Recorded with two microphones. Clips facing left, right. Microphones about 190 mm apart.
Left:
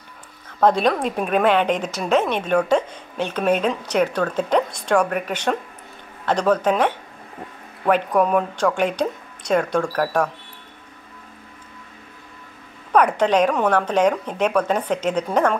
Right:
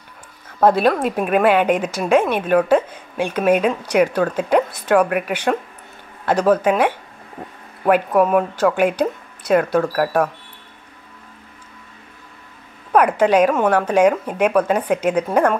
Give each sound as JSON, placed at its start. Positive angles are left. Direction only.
{"t": 0.6, "sound": "a woman's voice", "side_deg": -5}
{"t": 12.9, "sound": "a woman's voice", "side_deg": -10}